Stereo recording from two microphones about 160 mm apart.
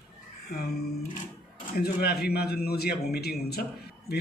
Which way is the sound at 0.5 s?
80° left.